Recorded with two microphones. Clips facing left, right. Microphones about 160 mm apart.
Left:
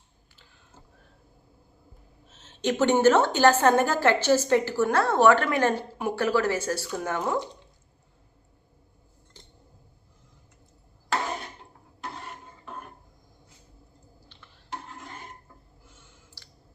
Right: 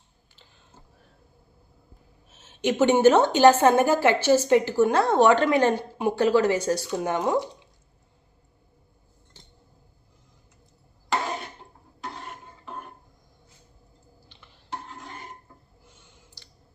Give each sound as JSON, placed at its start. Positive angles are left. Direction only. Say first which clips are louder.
{"t": 2.3, "sound": "a woman's voice", "louder": "right 2 dB", "side_deg": -10}